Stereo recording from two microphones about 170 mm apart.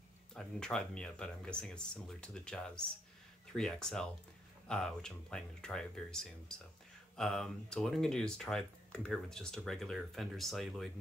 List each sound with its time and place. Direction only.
0.3 s speech: 5° left (ahead or behind)